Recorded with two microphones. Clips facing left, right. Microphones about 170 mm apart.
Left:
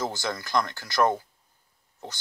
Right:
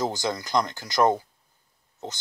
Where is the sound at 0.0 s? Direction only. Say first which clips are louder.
Right 3 dB; 15° right (ahead or behind).